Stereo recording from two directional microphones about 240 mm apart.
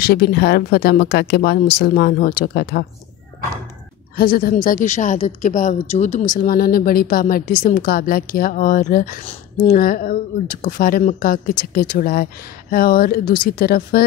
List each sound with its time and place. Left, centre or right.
0.0 s a woman's voice: left
4.2 s a woman's voice: left